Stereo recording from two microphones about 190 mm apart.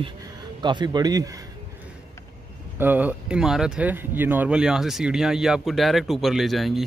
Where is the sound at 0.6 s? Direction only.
25° right (ahead or behind).